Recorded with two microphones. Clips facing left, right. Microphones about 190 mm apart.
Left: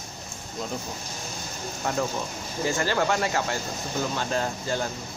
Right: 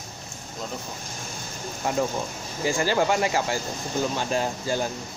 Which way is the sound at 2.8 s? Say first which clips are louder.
Right 3 dB; 15° right (ahead or behind).